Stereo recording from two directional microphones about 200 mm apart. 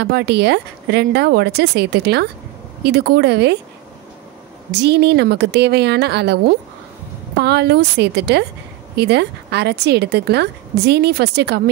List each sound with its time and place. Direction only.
0.0 s a woman's voice: 55° right (ahead or behind)
4.7 s a woman's voice: 55° right (ahead or behind)